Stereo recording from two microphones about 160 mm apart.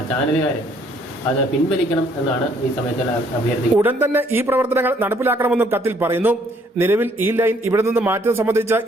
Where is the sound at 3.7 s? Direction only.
10° right (ahead or behind).